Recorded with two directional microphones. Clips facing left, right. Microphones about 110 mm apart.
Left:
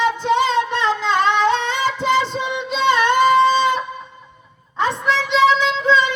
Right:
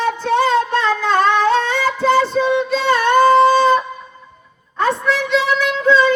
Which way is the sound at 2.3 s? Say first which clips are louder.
Right 7 dB; 20° left (ahead or behind).